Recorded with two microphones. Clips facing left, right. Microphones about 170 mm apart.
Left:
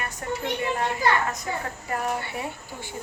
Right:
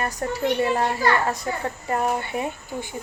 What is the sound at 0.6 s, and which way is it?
Speech, 35° right (ahead or behind).